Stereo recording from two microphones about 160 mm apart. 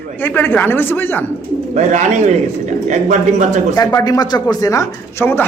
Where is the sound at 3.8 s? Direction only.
25° left (ahead or behind).